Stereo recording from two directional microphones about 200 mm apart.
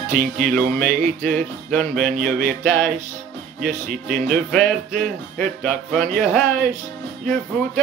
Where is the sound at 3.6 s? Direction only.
45° right (ahead or behind).